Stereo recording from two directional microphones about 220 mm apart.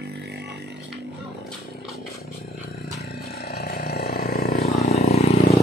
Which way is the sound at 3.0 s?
45° left (ahead or behind).